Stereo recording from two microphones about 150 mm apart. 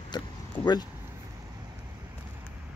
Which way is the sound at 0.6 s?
25° left (ahead or behind).